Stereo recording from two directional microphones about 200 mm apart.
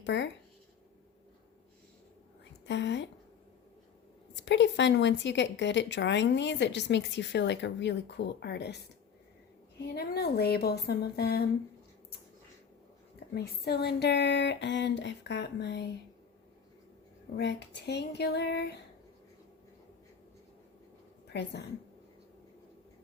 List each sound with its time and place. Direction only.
0.0 s speech: 65° left (ahead or behind)
2.4 s a sound: 60° left (ahead or behind)
4.4 s speech: 65° left (ahead or behind)
13.3 s speech: 55° left (ahead or behind)
17.3 s speech: 55° left (ahead or behind)
21.3 s speech: 55° left (ahead or behind)